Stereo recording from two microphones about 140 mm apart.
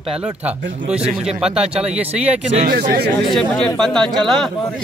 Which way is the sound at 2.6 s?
80° right.